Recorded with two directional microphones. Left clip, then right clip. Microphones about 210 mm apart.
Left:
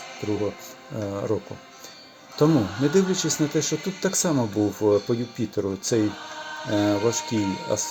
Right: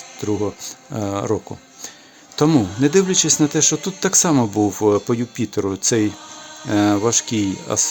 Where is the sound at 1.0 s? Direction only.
35° right (ahead or behind).